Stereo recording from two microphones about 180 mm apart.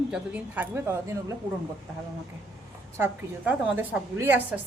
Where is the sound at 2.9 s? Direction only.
10° right (ahead or behind).